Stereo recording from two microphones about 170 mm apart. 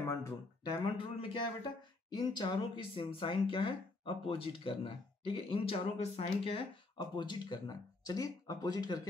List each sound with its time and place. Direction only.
0.0 s speech: 15° left (ahead or behind)
0.9 s speech: 30° left (ahead or behind)